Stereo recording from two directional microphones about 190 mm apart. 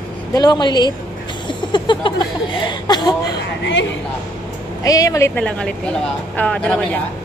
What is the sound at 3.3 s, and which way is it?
Speech, 70° left (ahead or behind).